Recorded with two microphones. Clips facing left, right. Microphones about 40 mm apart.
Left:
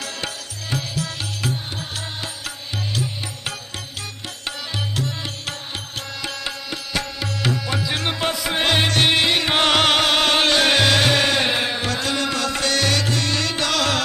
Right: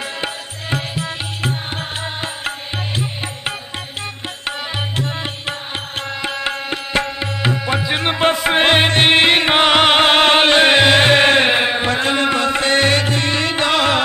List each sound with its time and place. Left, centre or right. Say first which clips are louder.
0.0 s music: right 5 dB; right
9.6 s music: right 4 dB; right